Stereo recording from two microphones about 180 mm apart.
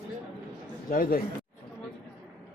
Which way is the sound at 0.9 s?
50° left (ahead or behind).